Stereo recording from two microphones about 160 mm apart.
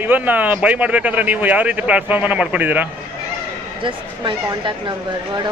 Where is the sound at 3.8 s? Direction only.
30° right (ahead or behind).